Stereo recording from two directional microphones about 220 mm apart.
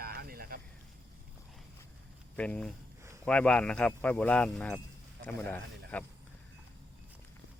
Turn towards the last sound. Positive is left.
turn(degrees=10)  # may be behind; listen again after turning